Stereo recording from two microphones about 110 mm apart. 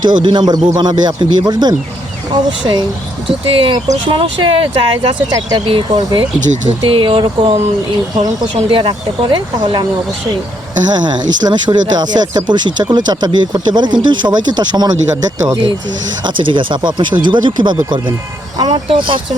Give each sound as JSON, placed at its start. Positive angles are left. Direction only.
{"t": 0.0, "sound": "speech", "side_deg": -40}
{"t": 6.1, "sound": "speech", "side_deg": -75}
{"t": 6.9, "sound": "speech", "side_deg": -50}
{"t": 8.5, "sound": "speech", "side_deg": -55}
{"t": 10.9, "sound": "speech", "side_deg": -40}
{"t": 16.2, "sound": "speech", "side_deg": -50}